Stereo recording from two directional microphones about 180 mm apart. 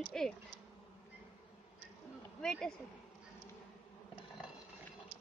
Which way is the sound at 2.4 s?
5° left (ahead or behind).